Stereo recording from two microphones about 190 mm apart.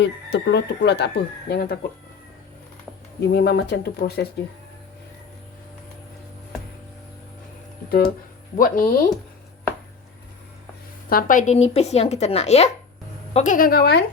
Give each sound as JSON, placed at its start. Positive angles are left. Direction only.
{"t": 0.0, "sound": "speech", "side_deg": 65}
{"t": 3.2, "sound": "speech", "side_deg": 60}
{"t": 7.9, "sound": "a woman's voice", "side_deg": 55}
{"t": 11.1, "sound": "a woman's voice", "side_deg": 45}